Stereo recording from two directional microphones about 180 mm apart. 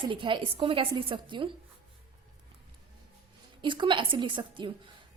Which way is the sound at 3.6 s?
25° right (ahead or behind).